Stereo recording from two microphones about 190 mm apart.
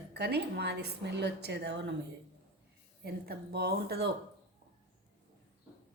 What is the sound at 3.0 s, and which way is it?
Speech, 60° right (ahead or behind).